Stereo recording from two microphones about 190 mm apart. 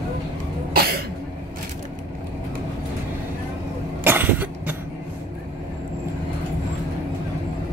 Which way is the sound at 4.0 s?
10° right (ahead or behind).